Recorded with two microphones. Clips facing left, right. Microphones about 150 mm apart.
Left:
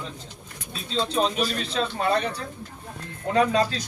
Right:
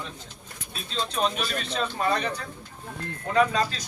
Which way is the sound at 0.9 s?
30° left (ahead or behind).